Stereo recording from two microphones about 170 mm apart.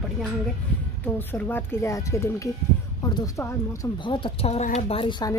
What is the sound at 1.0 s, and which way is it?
Speech, 10° left (ahead or behind).